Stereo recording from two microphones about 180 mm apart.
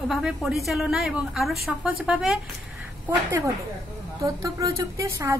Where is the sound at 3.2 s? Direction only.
15° right (ahead or behind).